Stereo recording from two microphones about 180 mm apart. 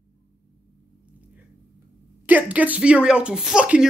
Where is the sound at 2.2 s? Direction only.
10° right (ahead or behind).